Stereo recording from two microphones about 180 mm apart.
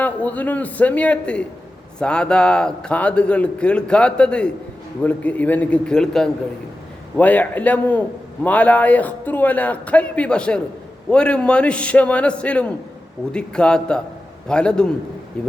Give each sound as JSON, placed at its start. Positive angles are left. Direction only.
{"t": 0.0, "sound": "a man's voice", "side_deg": 10}